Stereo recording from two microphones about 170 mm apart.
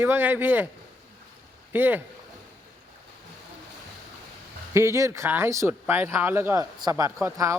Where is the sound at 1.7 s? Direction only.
10° right (ahead or behind).